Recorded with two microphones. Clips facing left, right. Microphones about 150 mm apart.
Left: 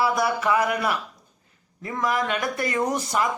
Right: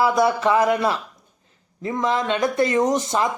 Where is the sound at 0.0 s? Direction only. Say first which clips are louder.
Right 5 dB; 20° right (ahead or behind).